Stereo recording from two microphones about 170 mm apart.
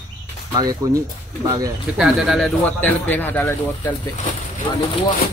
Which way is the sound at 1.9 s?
Centre (ahead or behind).